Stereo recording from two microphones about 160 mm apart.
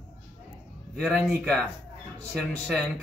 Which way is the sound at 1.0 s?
Centre (ahead or behind).